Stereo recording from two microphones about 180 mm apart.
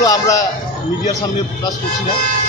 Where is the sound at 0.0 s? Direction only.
20° left (ahead or behind).